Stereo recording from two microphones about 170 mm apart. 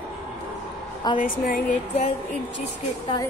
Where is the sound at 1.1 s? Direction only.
55° left (ahead or behind).